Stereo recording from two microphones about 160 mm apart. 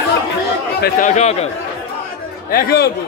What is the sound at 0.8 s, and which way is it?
Speech, 55° left (ahead or behind).